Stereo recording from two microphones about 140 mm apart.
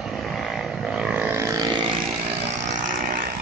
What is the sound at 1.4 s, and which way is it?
Vehicle, 25° right (ahead or behind).